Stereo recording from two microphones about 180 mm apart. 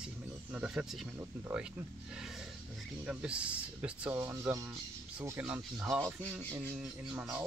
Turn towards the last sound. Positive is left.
turn(degrees=-5)  # may be behind; listen again after turning